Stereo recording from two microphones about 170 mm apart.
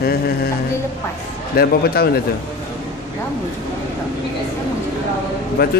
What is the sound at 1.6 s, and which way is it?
Speech, 65° left (ahead or behind).